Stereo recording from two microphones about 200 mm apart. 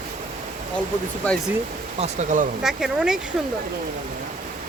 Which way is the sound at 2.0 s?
40° right (ahead or behind).